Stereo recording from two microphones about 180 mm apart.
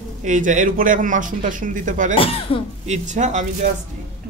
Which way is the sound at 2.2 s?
30° left (ahead or behind).